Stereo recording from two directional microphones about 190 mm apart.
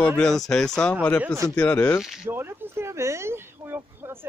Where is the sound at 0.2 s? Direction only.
Centre (ahead or behind).